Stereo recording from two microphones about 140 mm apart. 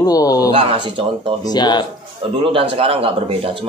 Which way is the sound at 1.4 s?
30° left (ahead or behind).